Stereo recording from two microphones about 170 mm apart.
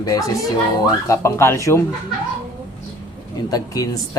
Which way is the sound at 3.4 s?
20° left (ahead or behind).